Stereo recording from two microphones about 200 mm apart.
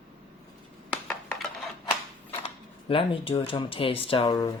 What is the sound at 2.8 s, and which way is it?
Speech, 25° left (ahead or behind).